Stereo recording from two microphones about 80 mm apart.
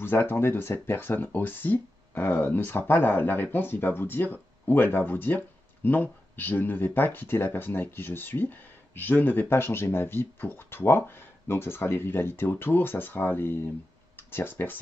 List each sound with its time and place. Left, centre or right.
0.0 s speech: left